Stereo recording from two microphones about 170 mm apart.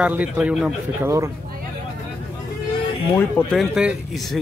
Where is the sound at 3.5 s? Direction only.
5° right (ahead or behind).